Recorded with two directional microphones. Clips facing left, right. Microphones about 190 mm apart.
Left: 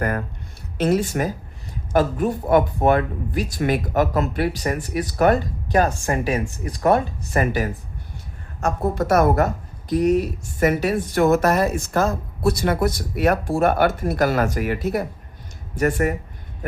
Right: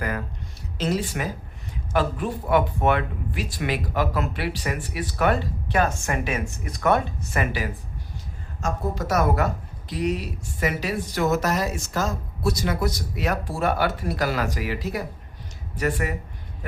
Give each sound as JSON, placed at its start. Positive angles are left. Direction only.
{"t": 0.8, "sound": "speech", "side_deg": 55}
{"t": 8.6, "sound": "a woman's voice", "side_deg": 60}